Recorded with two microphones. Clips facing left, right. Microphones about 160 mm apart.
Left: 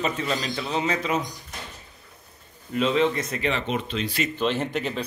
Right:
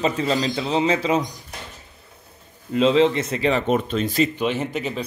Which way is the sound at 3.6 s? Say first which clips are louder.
Right 7 dB; 45° right (ahead or behind).